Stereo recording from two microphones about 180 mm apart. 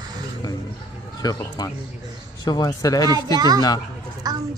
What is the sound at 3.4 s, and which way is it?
Speech, 20° right (ahead or behind).